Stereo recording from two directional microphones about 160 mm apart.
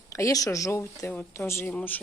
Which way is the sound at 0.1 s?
20° left (ahead or behind).